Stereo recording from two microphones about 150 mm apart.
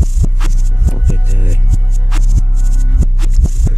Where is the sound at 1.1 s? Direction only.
20° right (ahead or behind).